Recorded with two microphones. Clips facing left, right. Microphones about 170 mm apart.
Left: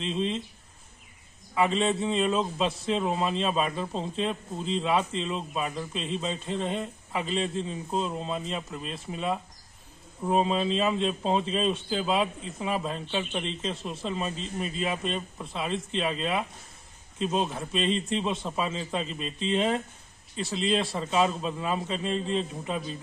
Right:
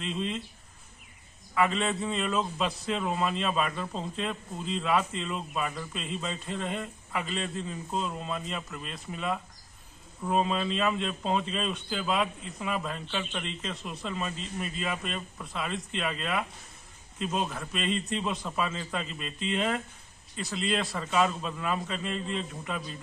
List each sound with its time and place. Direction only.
0.0 s a man's voice: 30° left (ahead or behind)
1.5 s a man's voice: 30° left (ahead or behind)